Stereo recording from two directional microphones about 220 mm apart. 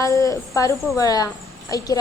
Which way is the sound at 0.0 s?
15° left (ahead or behind).